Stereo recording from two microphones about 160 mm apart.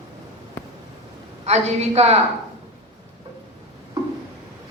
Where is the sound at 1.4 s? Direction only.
45° right (ahead or behind).